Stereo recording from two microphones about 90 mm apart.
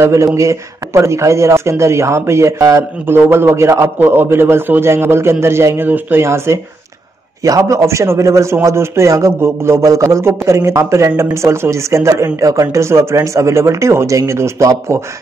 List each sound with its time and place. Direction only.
0.0 s a man's voice: 35° right (ahead or behind)